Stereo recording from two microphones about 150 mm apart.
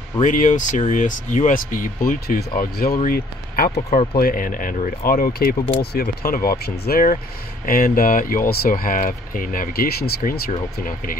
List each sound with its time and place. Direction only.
0.2 s speech: 60° left (ahead or behind); by 4.0 s 85° left
4.2 s speech: 70° left (ahead or behind)